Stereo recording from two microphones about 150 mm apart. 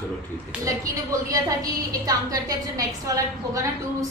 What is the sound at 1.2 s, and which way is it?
A woman's voice, 20° right (ahead or behind).